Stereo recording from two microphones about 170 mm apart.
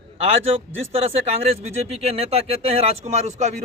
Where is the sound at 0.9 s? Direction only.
35° right (ahead or behind).